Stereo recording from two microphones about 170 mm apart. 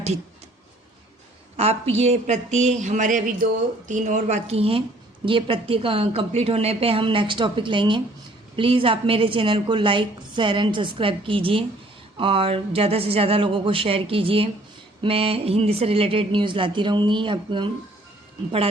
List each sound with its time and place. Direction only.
1.5 s a woman's voice: 35° right (ahead or behind)